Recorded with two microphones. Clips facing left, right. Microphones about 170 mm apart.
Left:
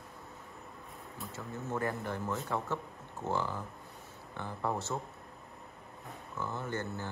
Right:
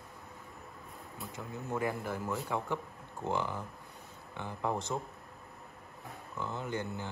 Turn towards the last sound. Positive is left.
turn(degrees=-15)  # may be behind; listen again after turning